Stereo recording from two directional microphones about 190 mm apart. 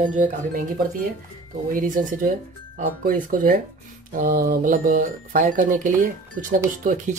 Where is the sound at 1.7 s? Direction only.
45° right (ahead or behind).